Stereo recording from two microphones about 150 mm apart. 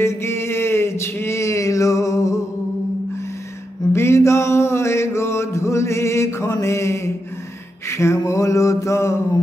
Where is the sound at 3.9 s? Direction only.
20° left (ahead or behind).